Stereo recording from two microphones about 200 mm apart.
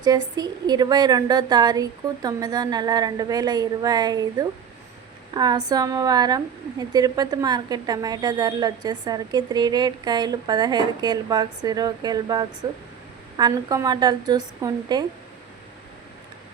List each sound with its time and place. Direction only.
0.0 s a woman's voice: 20° right (ahead or behind)